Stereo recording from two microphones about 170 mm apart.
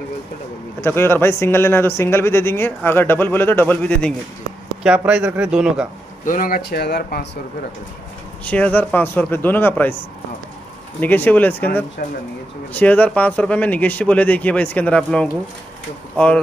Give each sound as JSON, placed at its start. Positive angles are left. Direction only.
{"t": 0.7, "sound": "speech", "side_deg": 15}
{"t": 4.8, "sound": "a man's voice", "side_deg": -5}
{"t": 6.2, "sound": "speech", "side_deg": 55}
{"t": 8.5, "sound": "speech", "side_deg": 10}
{"t": 11.0, "sound": "speech", "side_deg": 10}